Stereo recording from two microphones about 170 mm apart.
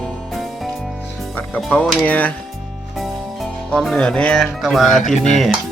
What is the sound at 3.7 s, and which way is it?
Speech, 5° left (ahead or behind).